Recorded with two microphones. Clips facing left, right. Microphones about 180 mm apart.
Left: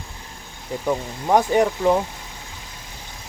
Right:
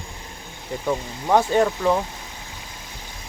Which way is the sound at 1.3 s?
15° left (ahead or behind).